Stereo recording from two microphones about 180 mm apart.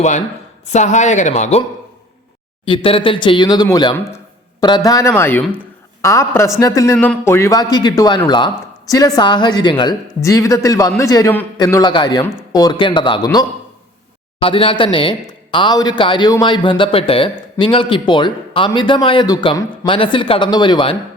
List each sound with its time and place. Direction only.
0.7 s speech: 40° left (ahead or behind)
2.6 s a man's voice: 30° left (ahead or behind)
6.9 s a man's voice: 5° left (ahead or behind); by 13.4 s 25° left (ahead or behind)
14.4 s speech: 30° left (ahead or behind)